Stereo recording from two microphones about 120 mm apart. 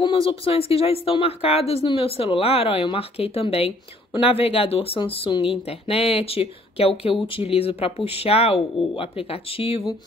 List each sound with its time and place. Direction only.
0.0 s speech: 45° left (ahead or behind)